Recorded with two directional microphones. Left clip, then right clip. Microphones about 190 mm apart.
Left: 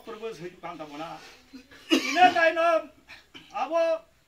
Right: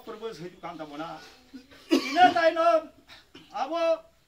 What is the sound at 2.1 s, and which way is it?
A man's voice, 5° right (ahead or behind).